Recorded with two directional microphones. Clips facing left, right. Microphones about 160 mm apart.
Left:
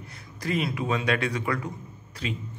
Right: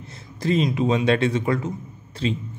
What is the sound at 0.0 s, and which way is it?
A man's voice, 25° right (ahead or behind).